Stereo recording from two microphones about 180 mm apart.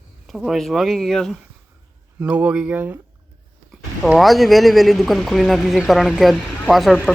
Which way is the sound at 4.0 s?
Centre (ahead or behind).